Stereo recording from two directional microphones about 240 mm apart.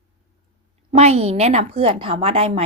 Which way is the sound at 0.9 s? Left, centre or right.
Right.